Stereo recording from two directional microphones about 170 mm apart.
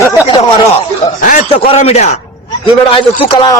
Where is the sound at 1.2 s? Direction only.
50° left (ahead or behind).